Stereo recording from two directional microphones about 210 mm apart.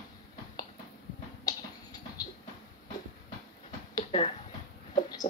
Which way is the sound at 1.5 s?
20° left (ahead or behind).